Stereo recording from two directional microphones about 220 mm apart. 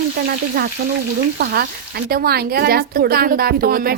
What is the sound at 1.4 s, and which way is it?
A woman's voice, 45° right (ahead or behind).